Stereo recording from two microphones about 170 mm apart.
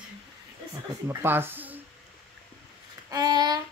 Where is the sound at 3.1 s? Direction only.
20° right (ahead or behind).